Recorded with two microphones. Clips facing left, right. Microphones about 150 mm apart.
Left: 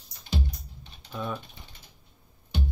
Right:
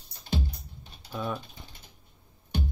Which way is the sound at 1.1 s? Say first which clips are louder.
Right 1 dB; 5° right (ahead or behind).